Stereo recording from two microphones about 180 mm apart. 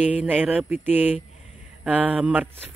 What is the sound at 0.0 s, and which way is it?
A man's voice, 10° right (ahead or behind).